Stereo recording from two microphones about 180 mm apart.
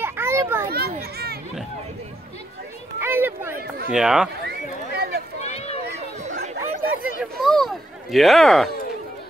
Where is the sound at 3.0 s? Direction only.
10° right (ahead or behind).